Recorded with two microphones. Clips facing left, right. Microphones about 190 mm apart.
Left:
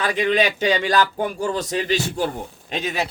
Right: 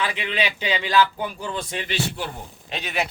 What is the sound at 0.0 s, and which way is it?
Speech, 40° left (ahead or behind).